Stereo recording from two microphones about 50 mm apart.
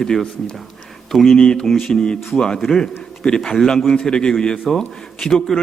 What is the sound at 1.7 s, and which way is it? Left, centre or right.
Speech, centre.